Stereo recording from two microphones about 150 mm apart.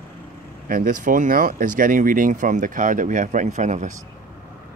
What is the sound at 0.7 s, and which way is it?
Speech, 60° right (ahead or behind).